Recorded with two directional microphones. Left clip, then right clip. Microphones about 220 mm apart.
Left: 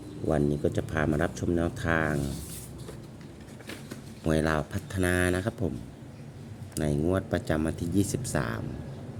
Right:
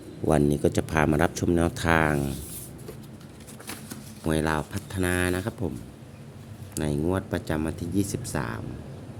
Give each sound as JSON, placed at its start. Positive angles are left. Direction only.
{"t": 0.3, "sound": "speech", "side_deg": -25}
{"t": 4.3, "sound": "speech", "side_deg": -5}
{"t": 6.7, "sound": "speech", "side_deg": -5}